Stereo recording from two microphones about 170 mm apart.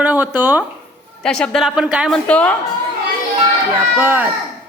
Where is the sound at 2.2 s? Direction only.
5° left (ahead or behind).